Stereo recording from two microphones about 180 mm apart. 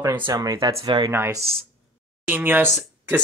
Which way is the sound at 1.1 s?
15° right (ahead or behind).